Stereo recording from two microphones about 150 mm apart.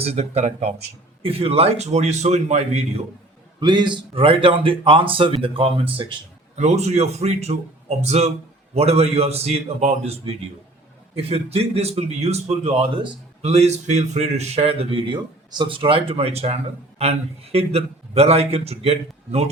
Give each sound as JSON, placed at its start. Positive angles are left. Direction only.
{"t": 0.0, "sound": "speech", "side_deg": -45}
{"t": 3.6, "sound": "a man's voice", "side_deg": -30}
{"t": 6.6, "sound": "speech", "side_deg": -45}
{"t": 13.4, "sound": "a man's voice", "side_deg": -45}